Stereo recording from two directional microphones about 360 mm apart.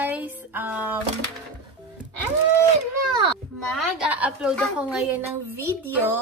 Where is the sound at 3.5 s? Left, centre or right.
Centre.